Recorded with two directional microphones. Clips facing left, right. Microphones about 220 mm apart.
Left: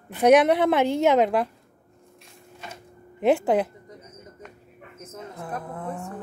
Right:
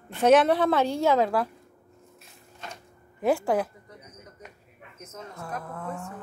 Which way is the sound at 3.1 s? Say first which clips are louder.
Left 4 dB; 20° left (ahead or behind).